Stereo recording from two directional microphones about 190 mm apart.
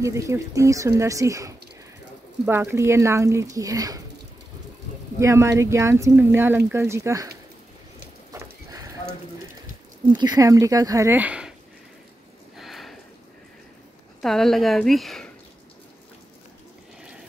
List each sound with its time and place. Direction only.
0.0 s speech: 15° right (ahead or behind)
5.2 s speech: 15° right (ahead or behind)
8.3 s neigh: 20° right (ahead or behind)
10.0 s speech: 25° right (ahead or behind); by 11.5 s 5° right (ahead or behind)
12.5 s sniff: centre (ahead or behind)
14.2 s a woman's voice: centre (ahead or behind)